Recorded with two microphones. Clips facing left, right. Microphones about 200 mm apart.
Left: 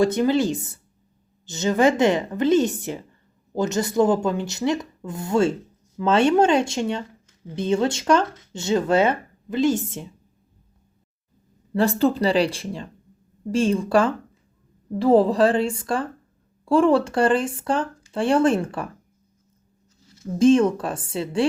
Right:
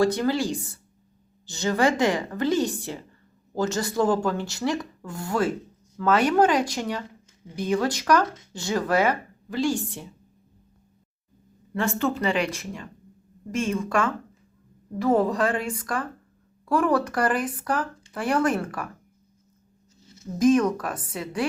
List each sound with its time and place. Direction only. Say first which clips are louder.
0.0 s speech: left 3 dB; 20° left (ahead or behind)
11.7 s speech: left 6 dB; 35° left (ahead or behind)
20.4 s speech: left 3 dB; 30° left (ahead or behind)